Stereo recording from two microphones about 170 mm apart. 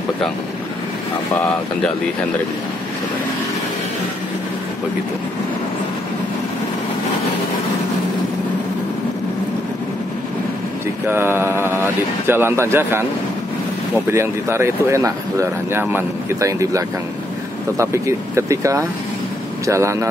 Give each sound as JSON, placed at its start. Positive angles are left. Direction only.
{"t": 11.1, "sound": "mantra", "side_deg": -15}
{"t": 12.3, "sound": "speech", "side_deg": -15}
{"t": 14.1, "sound": "speech", "side_deg": -15}